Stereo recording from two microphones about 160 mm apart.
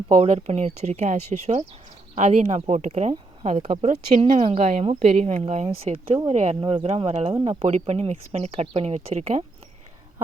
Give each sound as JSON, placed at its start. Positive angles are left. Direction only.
{"t": 0.1, "sound": "speech", "side_deg": -40}